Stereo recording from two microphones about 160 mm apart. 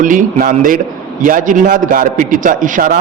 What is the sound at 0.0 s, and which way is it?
A man's voice, 55° right (ahead or behind).